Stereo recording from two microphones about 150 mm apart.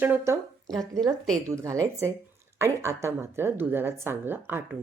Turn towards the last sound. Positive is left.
turn(degrees=-15)  # may be behind; listen again after turning